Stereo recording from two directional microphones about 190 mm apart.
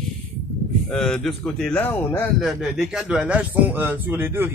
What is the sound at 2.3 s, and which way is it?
Speech, 5° right (ahead or behind).